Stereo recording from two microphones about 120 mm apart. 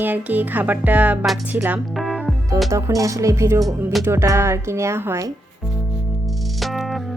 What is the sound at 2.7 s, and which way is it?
Speech, 25° right (ahead or behind).